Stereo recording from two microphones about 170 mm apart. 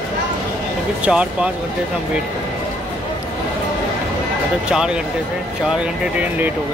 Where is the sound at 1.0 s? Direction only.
5° right (ahead or behind).